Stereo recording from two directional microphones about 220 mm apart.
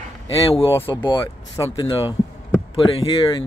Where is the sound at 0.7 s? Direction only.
15° left (ahead or behind).